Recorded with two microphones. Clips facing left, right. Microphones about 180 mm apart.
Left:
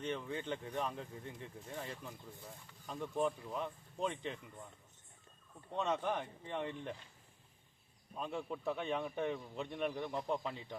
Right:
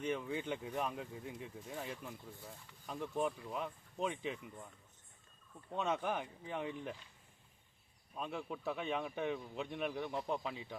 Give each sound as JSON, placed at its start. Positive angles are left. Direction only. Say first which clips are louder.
{"t": 0.0, "sound": "speech", "louder": "right 2 dB", "side_deg": -10}
{"t": 5.7, "sound": "speech", "louder": "left 1 dB", "side_deg": -5}
{"t": 8.1, "sound": "speech", "louder": "left 1 dB", "side_deg": 0}